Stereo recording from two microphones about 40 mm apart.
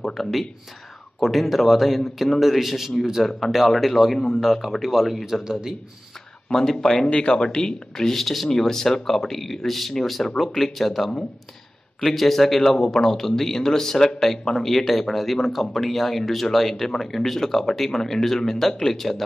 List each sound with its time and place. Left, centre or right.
0.0 s speech: centre
6.5 s a man's voice: centre
7.1 s a man's voice: left; by 19.2 s centre